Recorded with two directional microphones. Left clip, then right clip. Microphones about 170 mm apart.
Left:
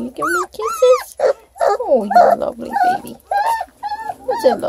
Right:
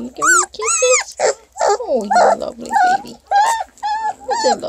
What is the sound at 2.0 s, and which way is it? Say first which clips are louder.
Speech: left 1 dB; 20° right (ahead or behind).